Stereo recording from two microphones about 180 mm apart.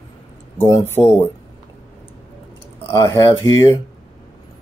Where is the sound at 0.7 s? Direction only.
15° left (ahead or behind).